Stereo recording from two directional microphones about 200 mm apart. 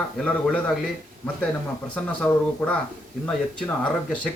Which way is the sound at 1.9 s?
5° left (ahead or behind).